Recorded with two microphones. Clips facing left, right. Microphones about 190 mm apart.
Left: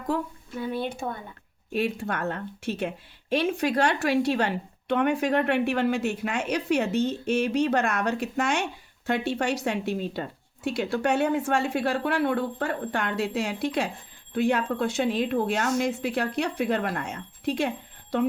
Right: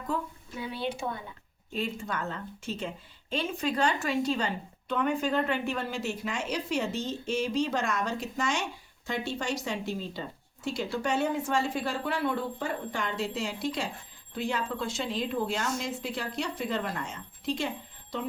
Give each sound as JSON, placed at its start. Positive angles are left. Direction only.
{"t": 0.1, "sound": "speech", "side_deg": 75}
{"t": 0.6, "sound": "speech", "side_deg": 50}
{"t": 1.7, "sound": "speech", "side_deg": 70}